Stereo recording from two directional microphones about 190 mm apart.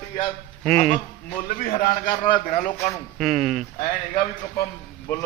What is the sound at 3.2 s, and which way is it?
Speech, centre (ahead or behind).